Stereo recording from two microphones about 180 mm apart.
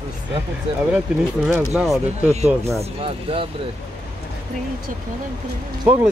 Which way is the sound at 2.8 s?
30° right (ahead or behind).